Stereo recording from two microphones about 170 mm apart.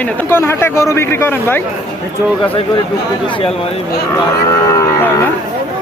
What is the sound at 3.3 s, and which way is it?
Speech, 35° left (ahead or behind).